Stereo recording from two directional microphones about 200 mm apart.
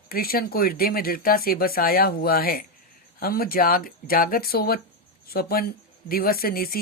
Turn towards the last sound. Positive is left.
turn(degrees=50)  # may be behind; listen again after turning